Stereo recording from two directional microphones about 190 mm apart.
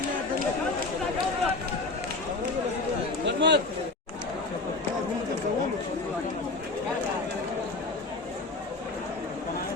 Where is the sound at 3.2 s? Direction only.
65° right (ahead or behind).